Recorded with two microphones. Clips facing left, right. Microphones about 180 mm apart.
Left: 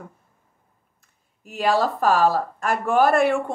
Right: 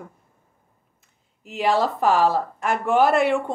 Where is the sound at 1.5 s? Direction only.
20° right (ahead or behind).